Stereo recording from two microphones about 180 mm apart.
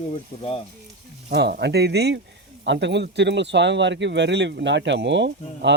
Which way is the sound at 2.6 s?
75° right (ahead or behind).